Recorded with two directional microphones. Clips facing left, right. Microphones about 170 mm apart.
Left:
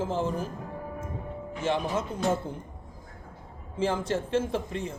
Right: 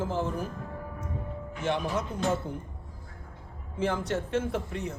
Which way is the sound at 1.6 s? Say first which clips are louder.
Left 1 dB; 30° left (ahead or behind).